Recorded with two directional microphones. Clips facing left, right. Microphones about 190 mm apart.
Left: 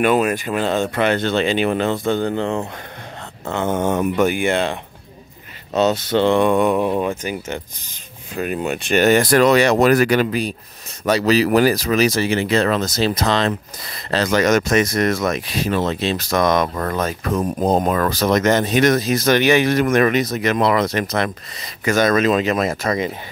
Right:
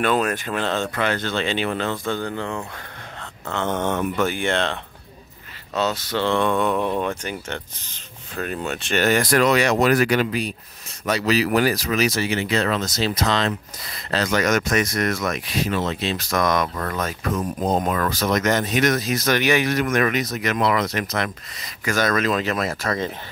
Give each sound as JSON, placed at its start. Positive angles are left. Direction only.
{"t": 0.0, "sound": "speech", "side_deg": 10}
{"t": 3.4, "sound": "speech", "side_deg": 10}
{"t": 5.7, "sound": "speech", "side_deg": 20}